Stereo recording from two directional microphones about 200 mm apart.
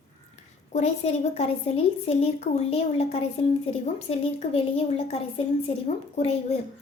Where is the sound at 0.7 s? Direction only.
35° left (ahead or behind).